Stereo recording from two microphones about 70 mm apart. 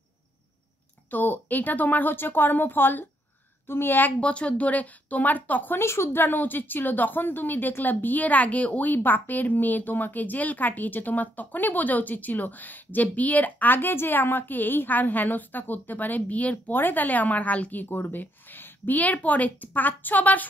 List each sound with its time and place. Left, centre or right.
1.1 s a woman's voice: left
4.2 s speech: centre
5.8 s speech: left